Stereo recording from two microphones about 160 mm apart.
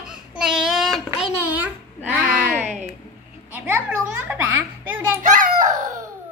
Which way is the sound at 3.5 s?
15° right (ahead or behind).